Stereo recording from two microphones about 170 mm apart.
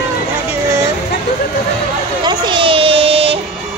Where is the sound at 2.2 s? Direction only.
30° right (ahead or behind).